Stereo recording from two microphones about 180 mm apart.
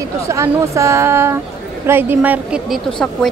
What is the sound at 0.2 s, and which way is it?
Speech, 15° right (ahead or behind).